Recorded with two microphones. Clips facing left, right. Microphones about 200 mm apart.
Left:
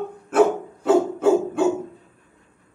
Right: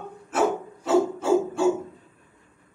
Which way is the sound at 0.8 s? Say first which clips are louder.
Left 5 dB; 60° left (ahead or behind).